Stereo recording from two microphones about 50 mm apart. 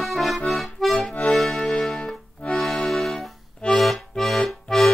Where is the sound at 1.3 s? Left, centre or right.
Centre.